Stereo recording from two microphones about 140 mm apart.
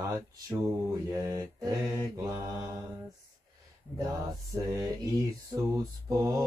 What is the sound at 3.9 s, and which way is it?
Mantra, 25° right (ahead or behind).